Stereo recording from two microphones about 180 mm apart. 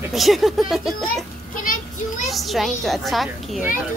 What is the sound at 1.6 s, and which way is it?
Speech, 45° left (ahead or behind).